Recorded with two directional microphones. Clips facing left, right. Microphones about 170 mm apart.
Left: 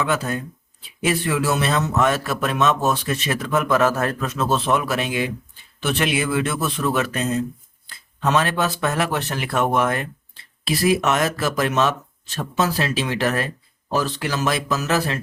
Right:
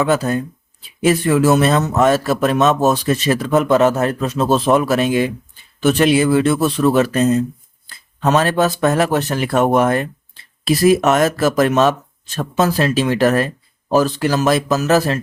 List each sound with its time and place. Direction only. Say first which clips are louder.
0.0 s speech: right 7 dB; 40° right (ahead or behind)